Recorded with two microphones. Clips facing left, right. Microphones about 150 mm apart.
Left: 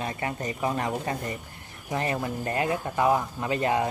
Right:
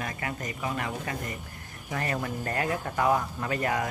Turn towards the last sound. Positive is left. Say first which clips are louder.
# left 3 dB
turn(degrees=20)  # may be behind; listen again after turning